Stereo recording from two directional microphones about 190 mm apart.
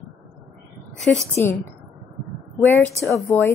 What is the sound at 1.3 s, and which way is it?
Speech, 15° left (ahead or behind).